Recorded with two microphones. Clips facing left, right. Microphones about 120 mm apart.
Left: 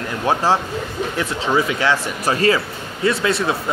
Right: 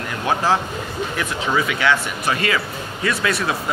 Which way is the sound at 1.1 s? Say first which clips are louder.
Left 3 dB; 35° left (ahead or behind).